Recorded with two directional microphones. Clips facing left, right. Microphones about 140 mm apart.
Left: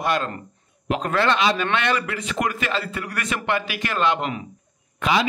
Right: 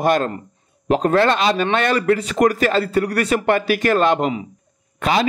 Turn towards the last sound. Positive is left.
turn(degrees=-40)  # may be behind; listen again after turning